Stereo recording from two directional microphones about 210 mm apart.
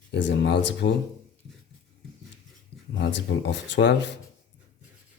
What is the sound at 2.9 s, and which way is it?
Speech, 55° left (ahead or behind).